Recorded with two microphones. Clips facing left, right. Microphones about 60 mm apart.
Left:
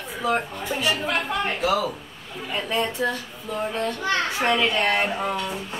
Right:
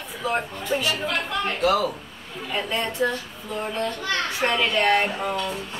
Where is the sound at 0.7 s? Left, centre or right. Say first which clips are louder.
Right 3 dB; right.